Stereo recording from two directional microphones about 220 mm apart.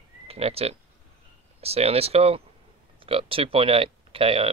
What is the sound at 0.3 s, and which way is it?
Speech, 25° right (ahead or behind).